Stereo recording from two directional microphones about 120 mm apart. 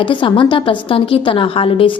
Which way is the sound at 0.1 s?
45° left (ahead or behind).